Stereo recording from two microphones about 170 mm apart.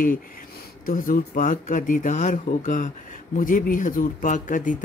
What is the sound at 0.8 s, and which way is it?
Speech, 55° left (ahead or behind).